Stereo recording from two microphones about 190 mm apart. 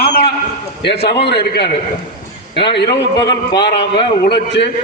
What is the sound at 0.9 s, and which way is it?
Speech, 60° left (ahead or behind).